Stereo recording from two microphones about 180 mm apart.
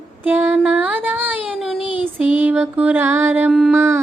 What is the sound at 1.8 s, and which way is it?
Child singing, 30° left (ahead or behind).